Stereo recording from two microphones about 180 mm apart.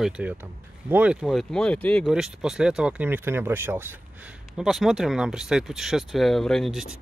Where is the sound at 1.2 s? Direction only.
5° left (ahead or behind).